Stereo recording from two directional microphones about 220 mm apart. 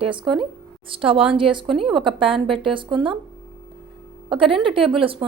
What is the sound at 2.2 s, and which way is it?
A woman's voice, 25° right (ahead or behind).